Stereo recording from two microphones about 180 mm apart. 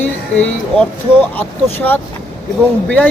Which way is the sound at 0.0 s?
10° left (ahead or behind).